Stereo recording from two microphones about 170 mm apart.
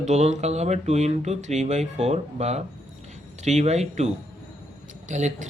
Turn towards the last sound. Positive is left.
turn(degrees=-45)  # may be behind; listen again after turning